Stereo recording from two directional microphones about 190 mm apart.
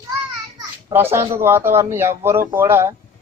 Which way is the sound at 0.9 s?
15° right (ahead or behind).